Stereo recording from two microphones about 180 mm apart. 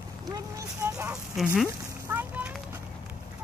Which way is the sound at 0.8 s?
15° right (ahead or behind).